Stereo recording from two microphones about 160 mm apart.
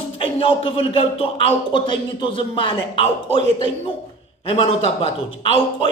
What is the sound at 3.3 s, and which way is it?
Speech, 45° right (ahead or behind).